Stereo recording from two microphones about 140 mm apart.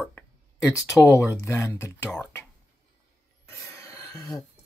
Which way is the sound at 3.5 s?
20° left (ahead or behind).